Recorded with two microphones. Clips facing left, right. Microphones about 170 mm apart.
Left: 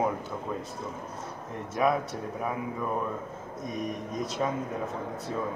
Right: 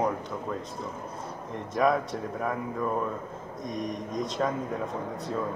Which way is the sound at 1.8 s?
5° left (ahead or behind).